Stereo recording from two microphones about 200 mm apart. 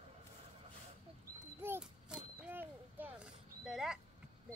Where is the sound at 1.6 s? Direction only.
5° right (ahead or behind).